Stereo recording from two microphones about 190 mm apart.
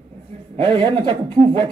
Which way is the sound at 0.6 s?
25° right (ahead or behind).